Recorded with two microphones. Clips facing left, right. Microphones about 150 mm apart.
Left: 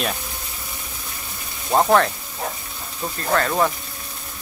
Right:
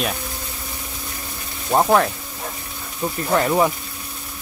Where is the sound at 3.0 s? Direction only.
15° right (ahead or behind).